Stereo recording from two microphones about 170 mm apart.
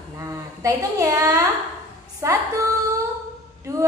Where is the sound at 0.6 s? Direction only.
20° right (ahead or behind).